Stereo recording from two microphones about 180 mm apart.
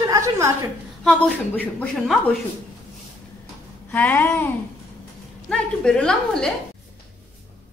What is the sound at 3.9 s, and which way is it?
Speech, 10° left (ahead or behind).